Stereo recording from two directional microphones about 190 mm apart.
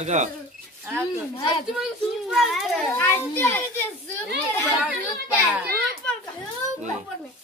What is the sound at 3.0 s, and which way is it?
Speech, 10° left (ahead or behind).